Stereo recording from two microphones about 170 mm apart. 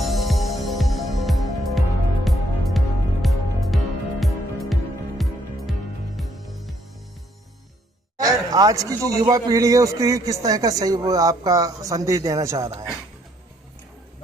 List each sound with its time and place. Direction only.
0.0 s music: centre (ahead or behind)
8.2 s a sound: 20° right (ahead or behind)
9.0 s a man's voice: 20° right (ahead or behind)